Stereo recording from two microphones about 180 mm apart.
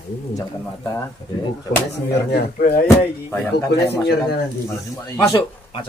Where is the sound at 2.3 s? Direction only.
60° left (ahead or behind).